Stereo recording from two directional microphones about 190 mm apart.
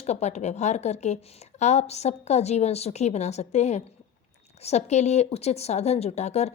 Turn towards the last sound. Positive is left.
turn(degrees=35)  # may be behind; listen again after turning